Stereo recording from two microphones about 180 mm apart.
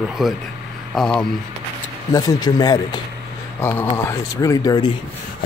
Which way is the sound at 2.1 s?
20° left (ahead or behind).